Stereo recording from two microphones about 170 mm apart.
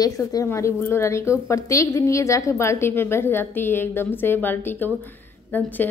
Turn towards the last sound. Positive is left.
turn(degrees=10)  # may be behind; listen again after turning